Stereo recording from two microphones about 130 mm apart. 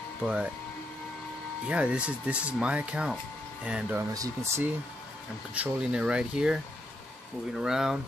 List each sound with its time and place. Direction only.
0.2 s speech: 10° right (ahead or behind)
1.7 s speech: 10° right (ahead or behind)
4.1 s speech: 25° right (ahead or behind)
5.5 s speech: 10° right (ahead or behind)